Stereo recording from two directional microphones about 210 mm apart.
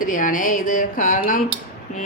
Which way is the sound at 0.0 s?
40° left (ahead or behind).